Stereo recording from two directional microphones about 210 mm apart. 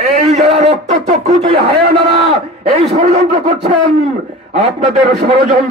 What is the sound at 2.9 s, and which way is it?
Speech, 30° right (ahead or behind).